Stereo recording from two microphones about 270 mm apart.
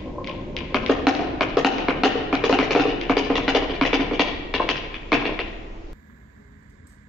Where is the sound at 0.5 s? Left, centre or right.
Centre.